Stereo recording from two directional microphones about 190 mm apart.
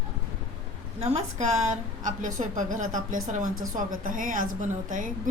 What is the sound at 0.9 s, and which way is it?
A woman's voice, 35° right (ahead or behind).